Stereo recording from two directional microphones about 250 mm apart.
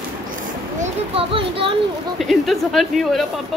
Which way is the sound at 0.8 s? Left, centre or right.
Right.